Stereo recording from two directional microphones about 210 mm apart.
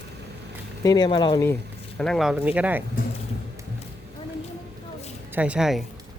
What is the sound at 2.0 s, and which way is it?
Speech, centre (ahead or behind).